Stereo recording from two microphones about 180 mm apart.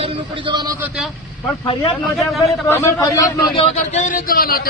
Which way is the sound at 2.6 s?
15° left (ahead or behind).